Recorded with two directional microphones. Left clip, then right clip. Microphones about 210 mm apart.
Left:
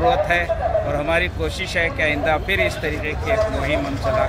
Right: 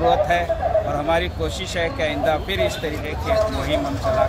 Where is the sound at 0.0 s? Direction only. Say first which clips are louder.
Even; 20° left (ahead or behind).